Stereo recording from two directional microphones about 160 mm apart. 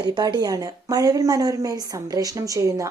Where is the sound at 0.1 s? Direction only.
25° right (ahead or behind).